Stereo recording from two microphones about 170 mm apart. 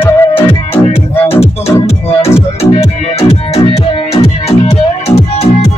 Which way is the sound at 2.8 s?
35° left (ahead or behind).